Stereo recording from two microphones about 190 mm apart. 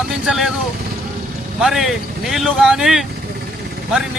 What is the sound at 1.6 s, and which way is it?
Speech, centre (ahead or behind).